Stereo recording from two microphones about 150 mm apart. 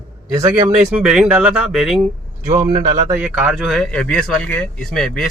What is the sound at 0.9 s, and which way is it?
Speech, 5° right (ahead or behind).